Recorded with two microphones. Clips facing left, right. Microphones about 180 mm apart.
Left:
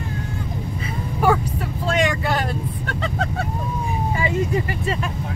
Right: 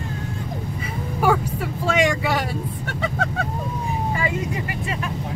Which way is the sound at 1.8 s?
10° right (ahead or behind).